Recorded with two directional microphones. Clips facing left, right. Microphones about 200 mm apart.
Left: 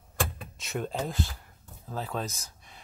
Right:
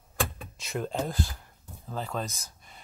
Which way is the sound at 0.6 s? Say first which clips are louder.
Right 1 dB; centre (ahead or behind).